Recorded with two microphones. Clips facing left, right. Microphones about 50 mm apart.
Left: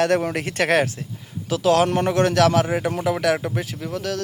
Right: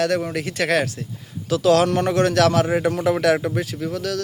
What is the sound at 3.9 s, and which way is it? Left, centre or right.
Speech, centre.